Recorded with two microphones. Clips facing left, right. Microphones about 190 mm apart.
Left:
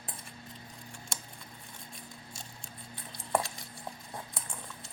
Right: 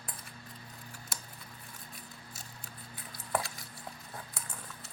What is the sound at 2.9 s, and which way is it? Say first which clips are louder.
Stir: left 3 dB; 25° left (ahead or behind).